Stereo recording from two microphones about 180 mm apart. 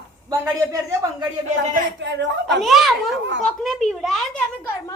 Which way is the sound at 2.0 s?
80° right.